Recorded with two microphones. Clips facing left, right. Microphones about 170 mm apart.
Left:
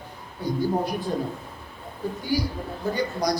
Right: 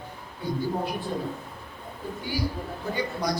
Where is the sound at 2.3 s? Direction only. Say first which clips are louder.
Left 3 dB; 40° left (ahead or behind).